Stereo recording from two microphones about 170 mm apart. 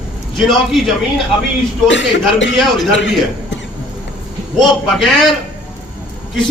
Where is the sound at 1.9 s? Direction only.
90° left.